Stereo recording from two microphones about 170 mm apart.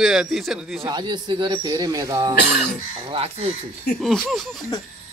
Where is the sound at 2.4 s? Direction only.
80° left.